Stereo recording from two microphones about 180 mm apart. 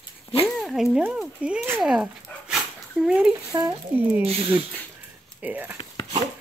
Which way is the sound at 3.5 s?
15° right (ahead or behind).